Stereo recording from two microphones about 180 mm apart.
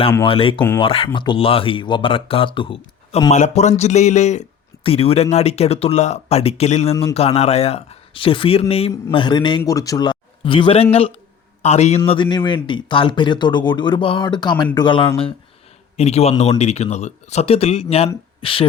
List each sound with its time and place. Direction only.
0.3 s speech: 30° left (ahead or behind)
3.3 s speech: 40° left (ahead or behind)